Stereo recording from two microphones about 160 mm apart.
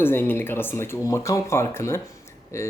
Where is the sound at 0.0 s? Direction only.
15° left (ahead or behind).